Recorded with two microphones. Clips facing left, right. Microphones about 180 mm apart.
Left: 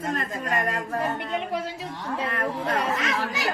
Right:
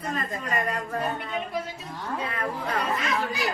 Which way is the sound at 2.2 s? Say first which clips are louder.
Left 4 dB; 75° left (ahead or behind).